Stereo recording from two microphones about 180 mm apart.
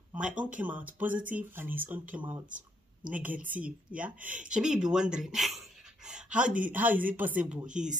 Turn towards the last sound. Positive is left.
turn(degrees=-5)  # may be behind; listen again after turning